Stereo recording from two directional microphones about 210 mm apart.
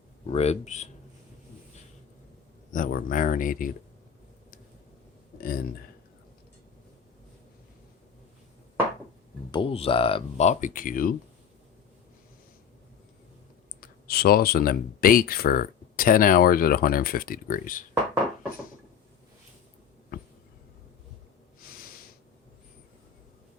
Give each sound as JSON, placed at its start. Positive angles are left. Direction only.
{"t": 0.3, "sound": "speech", "side_deg": 30}
{"t": 2.7, "sound": "speech", "side_deg": 40}
{"t": 5.4, "sound": "speech", "side_deg": 45}
{"t": 9.5, "sound": "speech", "side_deg": 25}
{"t": 13.8, "sound": "speech", "side_deg": 45}